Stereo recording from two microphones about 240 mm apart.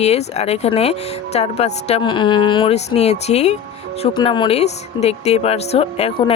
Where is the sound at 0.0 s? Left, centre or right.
Left.